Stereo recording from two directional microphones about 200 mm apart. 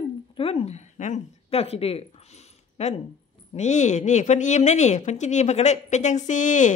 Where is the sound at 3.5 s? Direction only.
35° left (ahead or behind).